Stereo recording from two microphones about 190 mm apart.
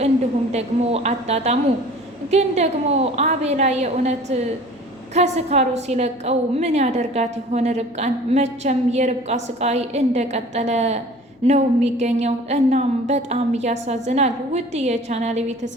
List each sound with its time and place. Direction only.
0.5 s a woman's voice: 35° right (ahead or behind)